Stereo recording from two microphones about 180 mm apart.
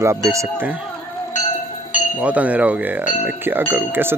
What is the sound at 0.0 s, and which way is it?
Speech, 15° right (ahead or behind).